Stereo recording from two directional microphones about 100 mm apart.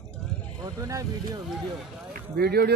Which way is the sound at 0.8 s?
35° right (ahead or behind).